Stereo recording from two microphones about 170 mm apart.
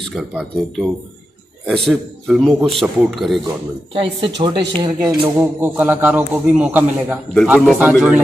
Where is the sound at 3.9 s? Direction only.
30° right (ahead or behind).